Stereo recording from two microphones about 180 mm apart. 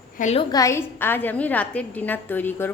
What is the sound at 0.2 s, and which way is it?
Speech, 40° left (ahead or behind).